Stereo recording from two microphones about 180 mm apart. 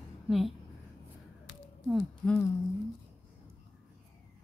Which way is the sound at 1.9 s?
5° left (ahead or behind).